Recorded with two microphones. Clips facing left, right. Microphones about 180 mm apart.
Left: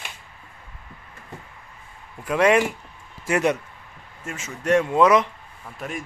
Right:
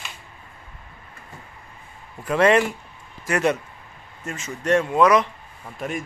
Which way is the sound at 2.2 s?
10° left (ahead or behind).